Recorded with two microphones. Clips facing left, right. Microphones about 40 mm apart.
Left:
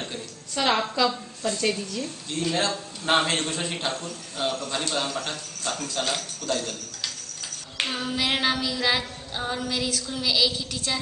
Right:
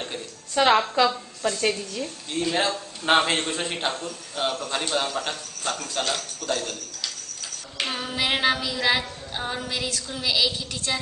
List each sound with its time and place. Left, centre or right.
0.1 s a sound: centre
1.6 s a woman's voice: centre
6.0 s a man's voice: centre
7.8 s female singing: centre
9.8 s a woman's voice: centre